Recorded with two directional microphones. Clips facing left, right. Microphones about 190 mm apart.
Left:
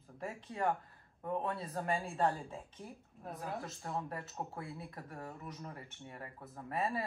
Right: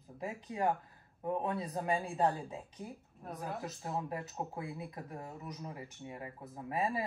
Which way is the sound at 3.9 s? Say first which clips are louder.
Right 2 dB; 20° right (ahead or behind).